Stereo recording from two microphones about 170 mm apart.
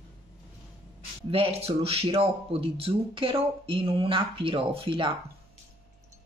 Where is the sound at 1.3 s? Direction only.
35° right (ahead or behind).